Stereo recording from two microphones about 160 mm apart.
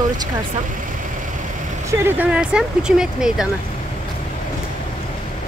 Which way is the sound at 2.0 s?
10° right (ahead or behind).